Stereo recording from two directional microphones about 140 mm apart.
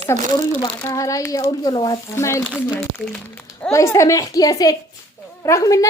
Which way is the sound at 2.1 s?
20° left (ahead or behind).